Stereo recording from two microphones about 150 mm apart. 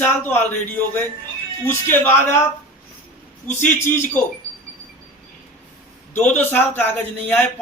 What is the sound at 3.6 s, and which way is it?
Speech, 15° left (ahead or behind).